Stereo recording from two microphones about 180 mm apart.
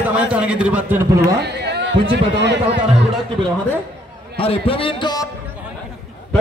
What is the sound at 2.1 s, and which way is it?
Speech, 75° right (ahead or behind).